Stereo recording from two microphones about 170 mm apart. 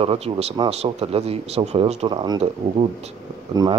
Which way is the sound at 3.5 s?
25° right (ahead or behind).